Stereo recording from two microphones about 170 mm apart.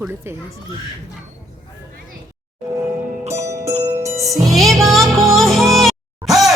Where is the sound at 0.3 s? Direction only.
15° right (ahead or behind).